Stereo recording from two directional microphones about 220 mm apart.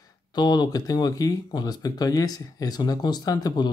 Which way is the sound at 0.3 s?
20° left (ahead or behind).